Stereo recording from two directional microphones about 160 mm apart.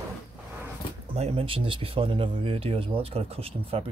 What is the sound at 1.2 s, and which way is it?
Speech, 40° right (ahead or behind).